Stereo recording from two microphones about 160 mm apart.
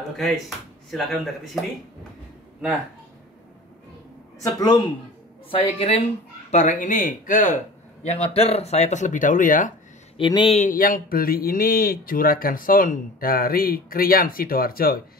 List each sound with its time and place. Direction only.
0.8 s speech: centre (ahead or behind)
4.4 s a man's voice: 25° left (ahead or behind)
5.5 s speech: 35° left (ahead or behind)
6.5 s a man's voice: 50° left (ahead or behind)
10.1 s speech: 30° left (ahead or behind)
10.6 s speech: 60° left (ahead or behind)